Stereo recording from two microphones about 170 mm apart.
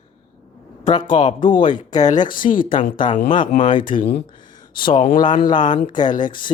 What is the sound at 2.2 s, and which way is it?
Speech, 55° left (ahead or behind).